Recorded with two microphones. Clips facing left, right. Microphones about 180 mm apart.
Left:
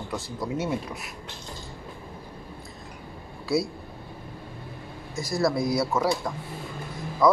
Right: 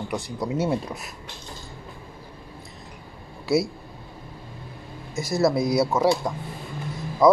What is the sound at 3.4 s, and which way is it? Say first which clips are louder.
Speech: right 3 dB; 25° right (ahead or behind).